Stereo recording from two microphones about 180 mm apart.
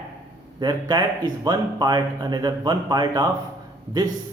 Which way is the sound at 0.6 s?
25° right (ahead or behind).